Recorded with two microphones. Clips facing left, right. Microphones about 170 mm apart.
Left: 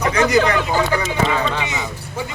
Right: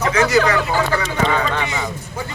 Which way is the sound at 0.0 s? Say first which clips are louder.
Even; 15° left (ahead or behind).